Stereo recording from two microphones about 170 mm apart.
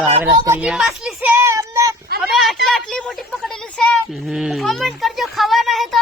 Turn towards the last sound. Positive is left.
turn(degrees=0)  # may be behind; listen again after turning